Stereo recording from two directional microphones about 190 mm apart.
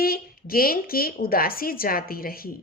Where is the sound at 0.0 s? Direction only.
50° left (ahead or behind).